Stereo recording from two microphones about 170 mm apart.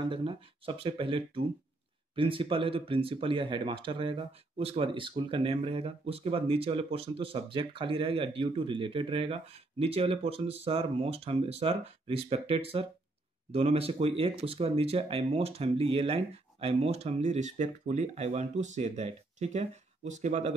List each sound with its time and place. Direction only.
0.0 s speech: 30° right (ahead or behind)